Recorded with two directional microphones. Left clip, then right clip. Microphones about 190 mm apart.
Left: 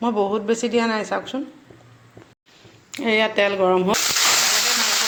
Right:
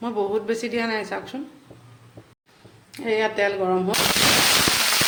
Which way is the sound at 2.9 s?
35° left (ahead or behind).